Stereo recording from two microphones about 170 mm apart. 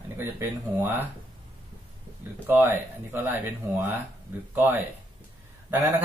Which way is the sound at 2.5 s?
10° right (ahead or behind).